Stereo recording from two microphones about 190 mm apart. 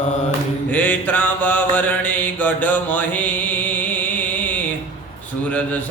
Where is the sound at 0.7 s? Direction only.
10° left (ahead or behind).